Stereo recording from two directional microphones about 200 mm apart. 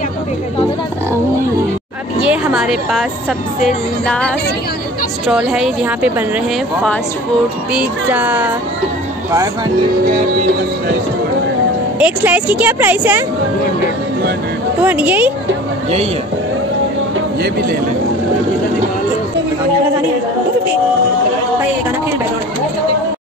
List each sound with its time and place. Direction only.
2.2 s a woman's voice: 5° right (ahead or behind)
7.7 s a woman's voice: 10° right (ahead or behind)
12.0 s a woman's voice: 10° right (ahead or behind)
14.8 s a woman's voice: 10° right (ahead or behind)
17.4 s speech: 50° right (ahead or behind)